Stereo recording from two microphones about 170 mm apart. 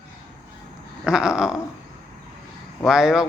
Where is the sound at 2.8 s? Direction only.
5° right (ahead or behind).